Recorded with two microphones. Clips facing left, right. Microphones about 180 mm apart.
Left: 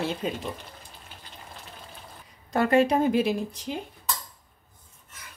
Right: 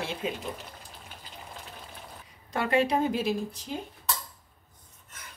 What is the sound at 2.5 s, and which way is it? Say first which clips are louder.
Speech: left 4 dB; 45° left (ahead or behind).